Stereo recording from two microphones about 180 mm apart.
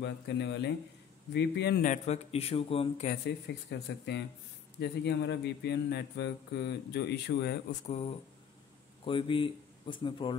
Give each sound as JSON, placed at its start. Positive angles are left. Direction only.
{"t": 0.0, "sound": "speech", "side_deg": 70}
{"t": 1.9, "sound": "speech", "side_deg": 35}
{"t": 3.1, "sound": "speech", "side_deg": 70}
{"t": 7.8, "sound": "speech", "side_deg": 35}